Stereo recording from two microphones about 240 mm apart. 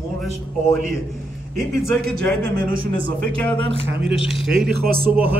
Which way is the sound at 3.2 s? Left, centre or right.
Centre.